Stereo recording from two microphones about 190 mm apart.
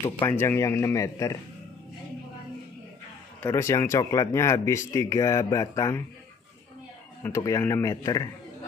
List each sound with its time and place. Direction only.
0.3 s speech: 10° left (ahead or behind)
3.4 s speech: 15° left (ahead or behind)
7.2 s speech: 15° left (ahead or behind)